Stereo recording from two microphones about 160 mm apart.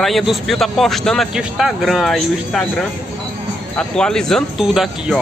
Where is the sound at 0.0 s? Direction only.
Centre (ahead or behind).